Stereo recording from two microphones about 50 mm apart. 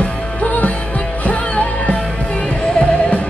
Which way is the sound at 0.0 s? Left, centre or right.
Left.